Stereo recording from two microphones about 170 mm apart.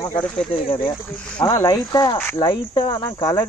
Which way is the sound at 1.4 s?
20° left (ahead or behind).